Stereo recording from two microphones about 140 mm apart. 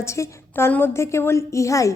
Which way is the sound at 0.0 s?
20° left (ahead or behind).